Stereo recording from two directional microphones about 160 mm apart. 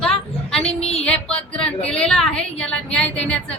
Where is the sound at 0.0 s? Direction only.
5° left (ahead or behind).